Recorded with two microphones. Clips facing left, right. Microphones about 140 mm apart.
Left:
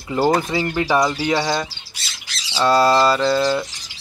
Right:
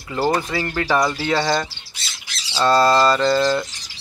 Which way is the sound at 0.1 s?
20° left (ahead or behind).